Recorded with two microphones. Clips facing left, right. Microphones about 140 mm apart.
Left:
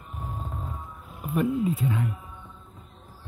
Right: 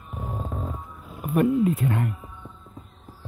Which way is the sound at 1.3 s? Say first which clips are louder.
Right 4 dB; 60° right (ahead or behind).